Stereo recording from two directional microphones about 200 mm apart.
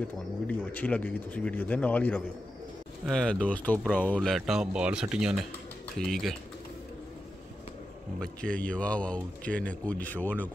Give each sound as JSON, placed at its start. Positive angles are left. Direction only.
{"t": 0.5, "sound": "speech", "side_deg": 10}
{"t": 8.2, "sound": "speech", "side_deg": 5}